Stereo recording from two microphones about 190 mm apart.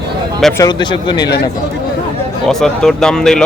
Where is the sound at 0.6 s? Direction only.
25° left (ahead or behind).